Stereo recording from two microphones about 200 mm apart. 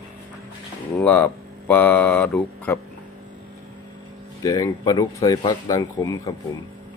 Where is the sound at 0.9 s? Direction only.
10° left (ahead or behind).